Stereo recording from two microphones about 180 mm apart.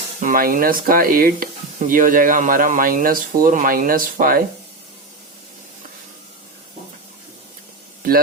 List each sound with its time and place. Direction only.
0.2 s speech: 50° right (ahead or behind)